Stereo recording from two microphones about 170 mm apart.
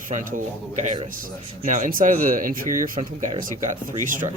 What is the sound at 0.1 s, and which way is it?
A man's voice, 50° right (ahead or behind).